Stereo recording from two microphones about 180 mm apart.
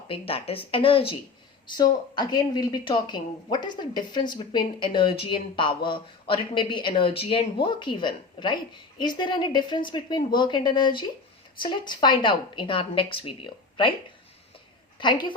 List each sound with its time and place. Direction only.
0.1 s speech: 30° left (ahead or behind)
14.9 s a woman's voice: 25° left (ahead or behind)